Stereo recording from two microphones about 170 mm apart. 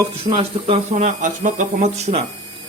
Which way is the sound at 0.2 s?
35° right (ahead or behind).